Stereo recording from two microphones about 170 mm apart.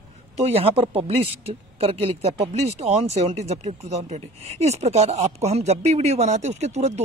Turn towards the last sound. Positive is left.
turn(degrees=-40)  # may be behind; listen again after turning